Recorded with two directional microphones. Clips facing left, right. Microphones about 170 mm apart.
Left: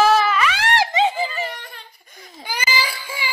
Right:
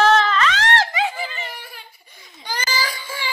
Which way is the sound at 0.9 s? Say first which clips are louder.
Left 5 dB; 25° left (ahead or behind).